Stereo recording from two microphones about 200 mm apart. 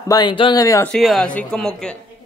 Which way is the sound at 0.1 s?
20° left (ahead or behind).